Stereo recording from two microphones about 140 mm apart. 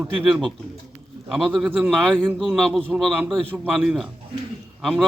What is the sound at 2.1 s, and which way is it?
A man's voice, 5° left (ahead or behind).